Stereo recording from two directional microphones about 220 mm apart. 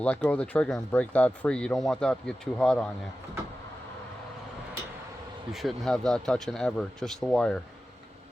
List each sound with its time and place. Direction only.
0.0 s speech: 5° left (ahead or behind)
5.5 s speech: centre (ahead or behind)